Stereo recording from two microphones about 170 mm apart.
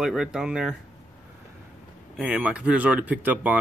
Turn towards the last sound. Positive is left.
turn(degrees=-10)  # may be behind; listen again after turning